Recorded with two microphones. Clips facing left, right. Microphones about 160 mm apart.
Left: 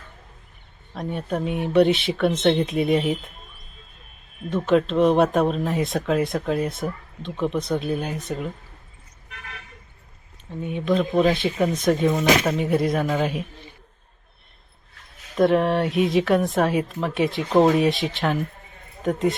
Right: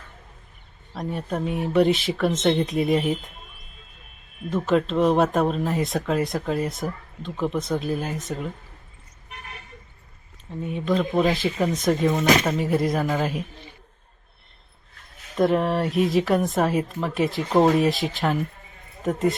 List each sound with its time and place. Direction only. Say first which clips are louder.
0.9 s a woman's voice: left 1 dB; centre (ahead or behind)
4.4 s a woman's voice: left 2 dB; 5° right (ahead or behind)
10.8 s a woman's voice: left 2 dB; centre (ahead or behind)
15.4 s a woman's voice: left 2 dB; centre (ahead or behind)